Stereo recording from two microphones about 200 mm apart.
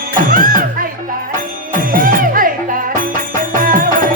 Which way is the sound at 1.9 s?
45° right (ahead or behind).